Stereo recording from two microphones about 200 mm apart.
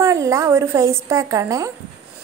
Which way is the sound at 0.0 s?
15° right (ahead or behind).